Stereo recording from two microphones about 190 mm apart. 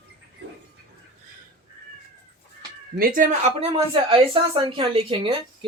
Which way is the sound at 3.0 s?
50° right (ahead or behind).